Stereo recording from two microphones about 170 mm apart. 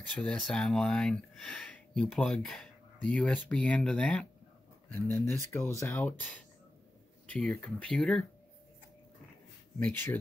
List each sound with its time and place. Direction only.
0.1 s speech: 5° left (ahead or behind)
9.8 s speech: 10° left (ahead or behind)